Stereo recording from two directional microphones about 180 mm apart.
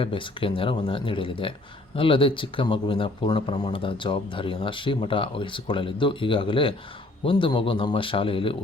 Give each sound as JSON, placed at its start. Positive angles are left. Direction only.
{"t": 0.0, "sound": "speech", "side_deg": 30}